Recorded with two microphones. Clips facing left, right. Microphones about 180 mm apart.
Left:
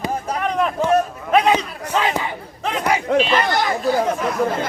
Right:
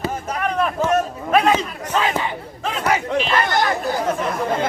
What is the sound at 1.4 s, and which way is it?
Crowd, 15° left (ahead or behind).